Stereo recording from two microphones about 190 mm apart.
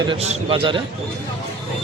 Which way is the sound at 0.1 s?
30° right (ahead or behind).